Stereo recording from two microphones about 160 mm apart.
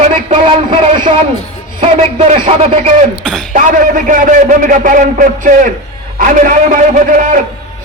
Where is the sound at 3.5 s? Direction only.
55° right (ahead or behind).